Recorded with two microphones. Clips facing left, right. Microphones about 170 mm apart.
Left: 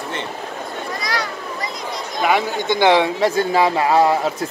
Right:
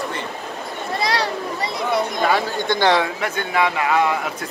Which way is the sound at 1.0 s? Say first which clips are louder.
Right 5 dB; 30° right (ahead or behind).